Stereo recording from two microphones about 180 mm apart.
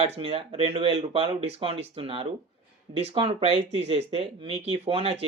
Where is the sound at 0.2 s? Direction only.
30° right (ahead or behind).